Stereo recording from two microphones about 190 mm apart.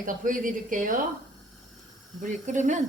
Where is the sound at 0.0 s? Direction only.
45° right (ahead or behind).